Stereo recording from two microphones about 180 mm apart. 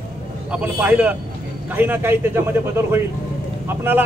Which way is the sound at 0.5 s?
5° right (ahead or behind).